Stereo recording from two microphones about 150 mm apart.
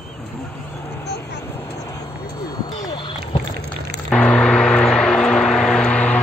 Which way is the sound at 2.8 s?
30° left (ahead or behind).